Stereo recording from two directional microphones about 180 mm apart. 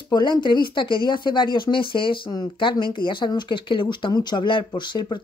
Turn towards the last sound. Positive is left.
turn(degrees=25)  # may be behind; listen again after turning